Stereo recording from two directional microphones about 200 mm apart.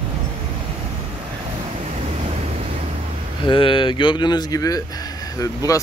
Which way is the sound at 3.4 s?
25° left (ahead or behind).